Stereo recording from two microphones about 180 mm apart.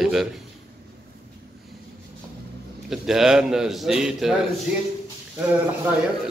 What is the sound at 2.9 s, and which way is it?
A man's voice, centre (ahead or behind).